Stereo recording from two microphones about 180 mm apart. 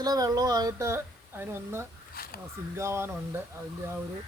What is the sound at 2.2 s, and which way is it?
Speech, 55° left (ahead or behind).